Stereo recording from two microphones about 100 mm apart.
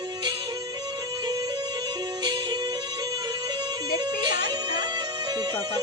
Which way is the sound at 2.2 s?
45° right (ahead or behind).